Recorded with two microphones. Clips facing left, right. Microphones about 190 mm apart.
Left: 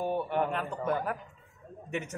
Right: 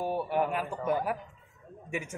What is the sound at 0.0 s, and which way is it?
A man's voice, 10° right (ahead or behind).